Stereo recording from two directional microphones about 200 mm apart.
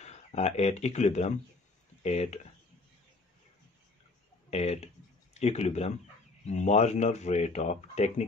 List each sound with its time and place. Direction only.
0.0 s speech: 30° left (ahead or behind)
4.5 s speech: 30° left (ahead or behind)